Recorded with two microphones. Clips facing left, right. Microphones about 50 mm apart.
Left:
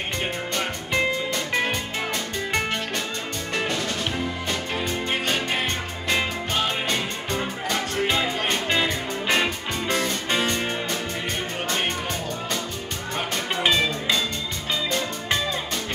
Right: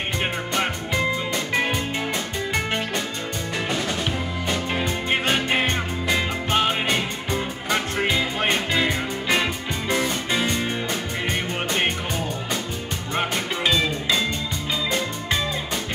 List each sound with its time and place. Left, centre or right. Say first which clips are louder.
3.5 s music: even; centre
5.2 s music: right 3 dB; right
8.5 s music: right 1 dB; centre